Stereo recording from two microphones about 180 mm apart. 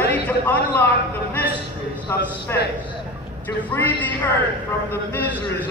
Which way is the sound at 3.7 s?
10° left (ahead or behind).